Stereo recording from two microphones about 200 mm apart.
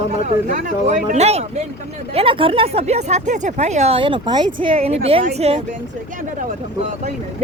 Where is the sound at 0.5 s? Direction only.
35° right (ahead or behind).